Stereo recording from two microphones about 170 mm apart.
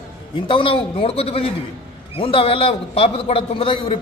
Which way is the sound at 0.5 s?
30° left (ahead or behind).